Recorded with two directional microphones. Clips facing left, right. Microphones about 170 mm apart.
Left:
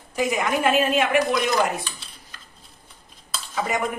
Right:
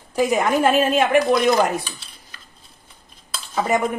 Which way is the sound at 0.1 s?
35° right (ahead or behind).